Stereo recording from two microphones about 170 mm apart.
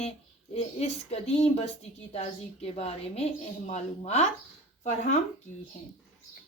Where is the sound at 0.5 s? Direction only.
40° left (ahead or behind).